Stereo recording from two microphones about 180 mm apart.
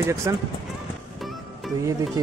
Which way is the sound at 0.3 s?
15° right (ahead or behind).